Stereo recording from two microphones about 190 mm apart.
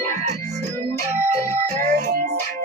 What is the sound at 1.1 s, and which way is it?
Music, 40° right (ahead or behind).